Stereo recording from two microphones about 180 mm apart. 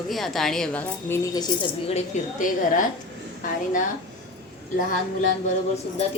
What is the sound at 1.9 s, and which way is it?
Speech, 45° left (ahead or behind).